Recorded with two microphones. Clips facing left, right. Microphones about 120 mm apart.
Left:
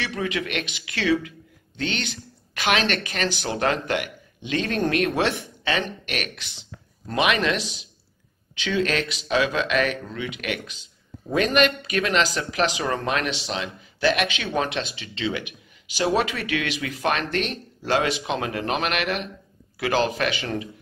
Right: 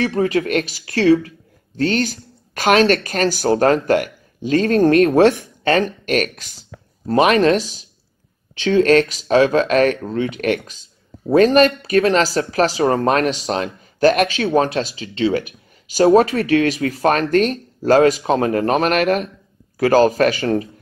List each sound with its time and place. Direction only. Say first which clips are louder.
0.0 s speech: right 10 dB; 40° right (ahead or behind)